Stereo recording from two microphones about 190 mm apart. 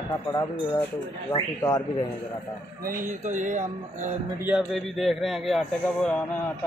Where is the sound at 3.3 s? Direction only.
40° right (ahead or behind).